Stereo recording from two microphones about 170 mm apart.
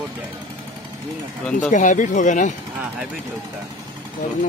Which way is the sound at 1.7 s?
50° left (ahead or behind).